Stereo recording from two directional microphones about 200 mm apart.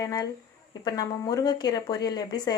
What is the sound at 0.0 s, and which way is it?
Speech, 20° left (ahead or behind).